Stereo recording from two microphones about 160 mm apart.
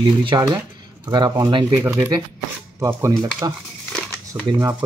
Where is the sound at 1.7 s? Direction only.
15° right (ahead or behind).